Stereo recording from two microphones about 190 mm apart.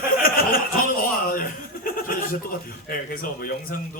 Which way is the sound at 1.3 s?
50° left (ahead or behind).